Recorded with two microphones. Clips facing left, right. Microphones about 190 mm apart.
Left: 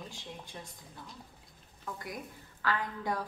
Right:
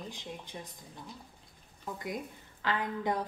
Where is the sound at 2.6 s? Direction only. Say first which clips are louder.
Right 2 dB; 20° right (ahead or behind).